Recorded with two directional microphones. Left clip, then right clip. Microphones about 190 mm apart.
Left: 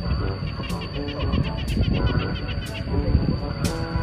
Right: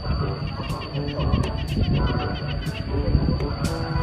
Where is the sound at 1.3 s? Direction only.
25° left (ahead or behind).